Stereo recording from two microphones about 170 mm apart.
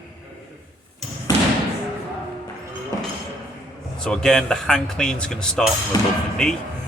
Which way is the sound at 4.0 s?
5° left (ahead or behind).